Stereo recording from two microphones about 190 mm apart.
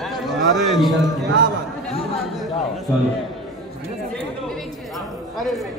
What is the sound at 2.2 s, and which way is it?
Speech, centre (ahead or behind).